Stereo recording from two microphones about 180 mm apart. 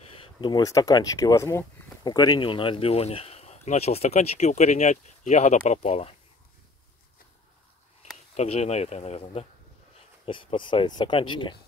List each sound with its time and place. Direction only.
0.4 s speech: 20° left (ahead or behind); by 6.1 s 35° left (ahead or behind)
8.4 s speech: 35° left (ahead or behind)